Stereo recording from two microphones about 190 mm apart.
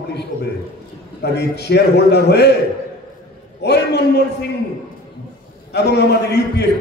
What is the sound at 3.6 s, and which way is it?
Speech, 60° left (ahead or behind).